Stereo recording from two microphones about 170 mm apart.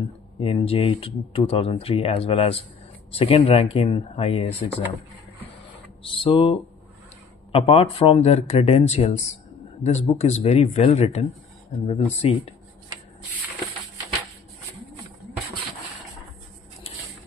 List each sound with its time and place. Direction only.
0.4 s speech: 35° left (ahead or behind)
6.0 s speech: 30° left (ahead or behind)